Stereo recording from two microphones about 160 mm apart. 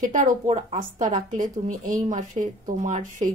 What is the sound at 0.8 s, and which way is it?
A woman's voice, 55° right (ahead or behind).